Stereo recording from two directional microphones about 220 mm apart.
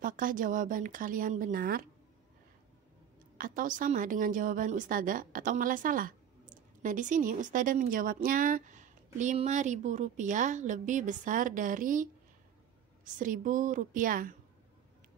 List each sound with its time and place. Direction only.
0.0 s a woman's voice: 40° right (ahead or behind)
3.3 s a woman's voice: 40° right (ahead or behind)